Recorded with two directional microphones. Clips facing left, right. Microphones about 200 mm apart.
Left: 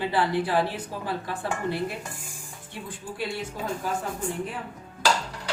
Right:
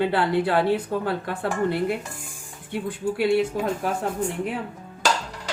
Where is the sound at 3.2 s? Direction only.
65° right (ahead or behind).